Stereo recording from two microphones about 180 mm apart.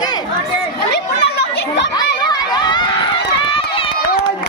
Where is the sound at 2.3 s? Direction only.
20° left (ahead or behind).